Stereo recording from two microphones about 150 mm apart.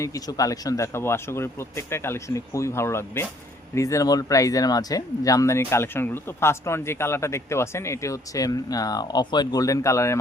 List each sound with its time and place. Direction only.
0.0 s speech: 20° left (ahead or behind)